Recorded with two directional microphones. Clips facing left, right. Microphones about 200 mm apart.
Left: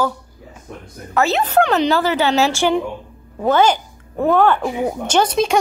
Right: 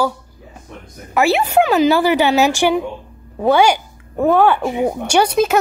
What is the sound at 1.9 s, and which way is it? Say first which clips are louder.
A woman's voice: right 3 dB; 15° right (ahead or behind).